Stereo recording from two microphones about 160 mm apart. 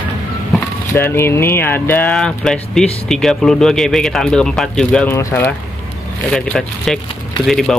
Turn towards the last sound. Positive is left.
turn(degrees=0)  # may be behind; listen again after turning